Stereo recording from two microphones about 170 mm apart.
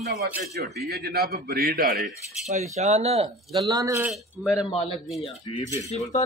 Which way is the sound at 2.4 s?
45° right (ahead or behind).